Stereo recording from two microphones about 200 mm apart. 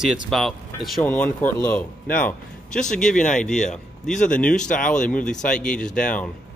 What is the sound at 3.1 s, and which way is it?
Speech, 40° left (ahead or behind).